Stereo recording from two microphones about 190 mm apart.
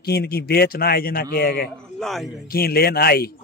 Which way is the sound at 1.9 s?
Centre (ahead or behind).